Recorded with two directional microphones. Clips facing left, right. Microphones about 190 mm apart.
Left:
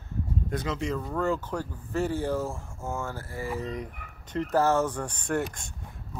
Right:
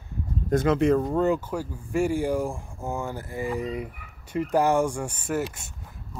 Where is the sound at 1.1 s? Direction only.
15° right (ahead or behind).